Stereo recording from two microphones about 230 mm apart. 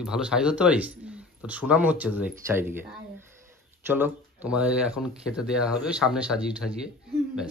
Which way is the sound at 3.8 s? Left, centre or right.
Centre.